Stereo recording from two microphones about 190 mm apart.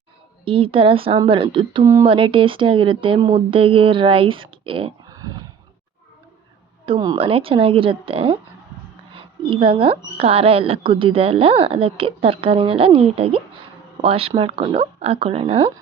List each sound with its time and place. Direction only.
0.4 s speech: 30° right (ahead or behind)
6.8 s speech: 25° right (ahead or behind)